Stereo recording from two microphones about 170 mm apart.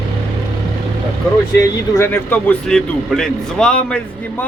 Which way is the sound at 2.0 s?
10° left (ahead or behind).